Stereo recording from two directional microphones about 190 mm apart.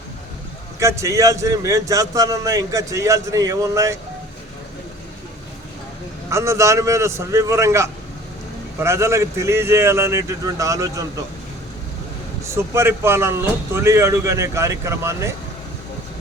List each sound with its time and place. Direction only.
0.8 s a man's voice: 15° right (ahead or behind)
6.3 s a man's voice: 15° right (ahead or behind)
12.4 s a man's voice: 15° right (ahead or behind)